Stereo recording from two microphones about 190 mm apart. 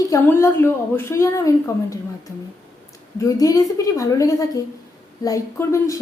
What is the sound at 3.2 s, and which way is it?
A woman's voice, 20° left (ahead or behind).